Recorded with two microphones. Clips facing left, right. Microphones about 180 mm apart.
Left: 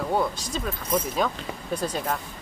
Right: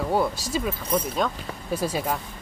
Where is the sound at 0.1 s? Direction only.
5° right (ahead or behind).